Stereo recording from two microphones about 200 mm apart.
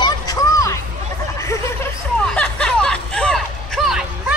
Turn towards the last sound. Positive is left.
turn(degrees=0)  # may be behind; listen again after turning